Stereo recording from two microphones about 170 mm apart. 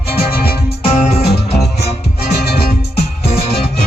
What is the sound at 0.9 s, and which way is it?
Music, 35° left (ahead or behind).